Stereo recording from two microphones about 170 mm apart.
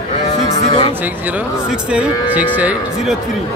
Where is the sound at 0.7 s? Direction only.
35° left (ahead or behind).